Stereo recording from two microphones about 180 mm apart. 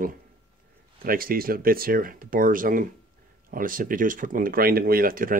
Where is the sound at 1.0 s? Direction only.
55° right (ahead or behind).